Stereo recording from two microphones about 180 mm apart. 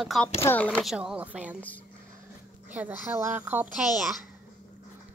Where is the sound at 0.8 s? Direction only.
5° right (ahead or behind).